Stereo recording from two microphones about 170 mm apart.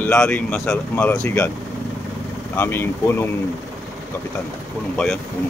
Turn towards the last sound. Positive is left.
turn(degrees=5)  # may be behind; listen again after turning